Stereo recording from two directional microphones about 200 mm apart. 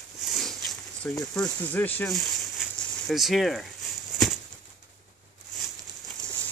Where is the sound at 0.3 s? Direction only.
Centre (ahead or behind).